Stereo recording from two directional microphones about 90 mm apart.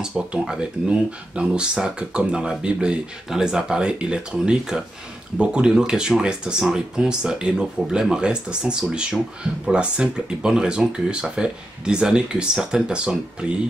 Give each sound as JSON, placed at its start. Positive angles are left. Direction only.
{"t": 0.0, "sound": "speech", "side_deg": -10}